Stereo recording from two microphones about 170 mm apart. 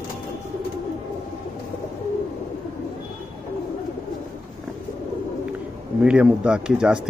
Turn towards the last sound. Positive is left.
turn(degrees=-5)  # may be behind; listen again after turning